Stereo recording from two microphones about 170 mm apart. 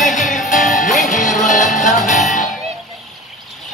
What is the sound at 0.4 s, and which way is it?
Music, centre (ahead or behind).